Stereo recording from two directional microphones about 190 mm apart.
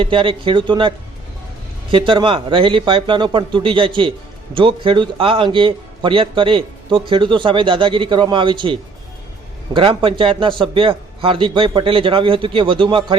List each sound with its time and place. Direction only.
0.0 s a man's voice: 25° right (ahead or behind)